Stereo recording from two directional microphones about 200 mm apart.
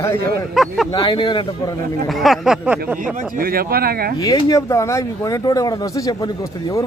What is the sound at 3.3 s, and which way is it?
Speech, 50° right (ahead or behind).